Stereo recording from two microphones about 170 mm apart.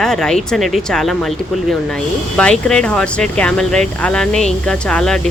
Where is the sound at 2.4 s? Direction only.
5° left (ahead or behind).